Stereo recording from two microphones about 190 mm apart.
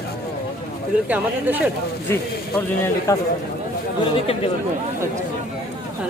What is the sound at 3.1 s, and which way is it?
Speech, 15° left (ahead or behind).